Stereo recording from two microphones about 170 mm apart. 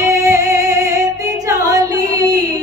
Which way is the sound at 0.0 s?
20° right (ahead or behind).